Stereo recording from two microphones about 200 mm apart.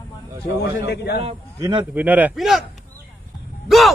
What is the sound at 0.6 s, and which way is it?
Speech, 55° left (ahead or behind).